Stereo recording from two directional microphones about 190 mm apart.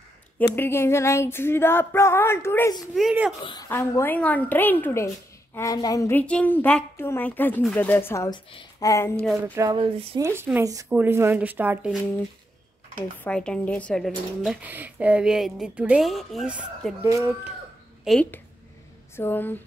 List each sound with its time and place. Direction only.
0.4 s a woman's voice: 10° left (ahead or behind)
2.9 s speech: centre (ahead or behind)
3.4 s a woman's voice: 20° left (ahead or behind)
9.4 s speech: 15° right (ahead or behind)
9.8 s speech: 30° right (ahead or behind)
10.2 s speech: 10° right (ahead or behind)
13.2 s speech: 5° left (ahead or behind); by 17.3 s 10° right (ahead or behind)
18.0 s a woman's voice: 5° left (ahead or behind)